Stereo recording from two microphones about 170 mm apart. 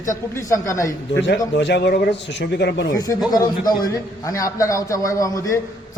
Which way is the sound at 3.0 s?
20° left (ahead or behind).